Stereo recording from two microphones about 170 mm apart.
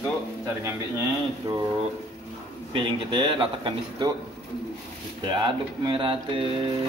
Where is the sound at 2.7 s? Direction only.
30° right (ahead or behind).